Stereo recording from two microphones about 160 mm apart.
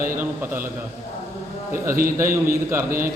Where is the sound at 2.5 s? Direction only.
15° right (ahead or behind).